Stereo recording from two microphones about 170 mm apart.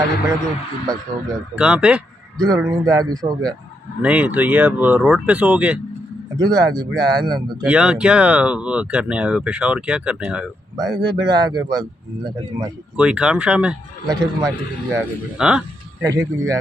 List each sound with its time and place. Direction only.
0.8 s speech: 20° right (ahead or behind)
1.5 s speech: 5° right (ahead or behind)
2.3 s speech: 20° right (ahead or behind)
4.0 s speech: 10° right (ahead or behind)
6.3 s speech: 25° right (ahead or behind)
7.6 s speech: 5° right (ahead or behind)
11.1 s speech: 25° right (ahead or behind)
12.9 s speech: 5° right (ahead or behind)
14.0 s speech: 20° right (ahead or behind)
15.3 s a man's voice: 5° right (ahead or behind)
16.0 s speech: 20° right (ahead or behind)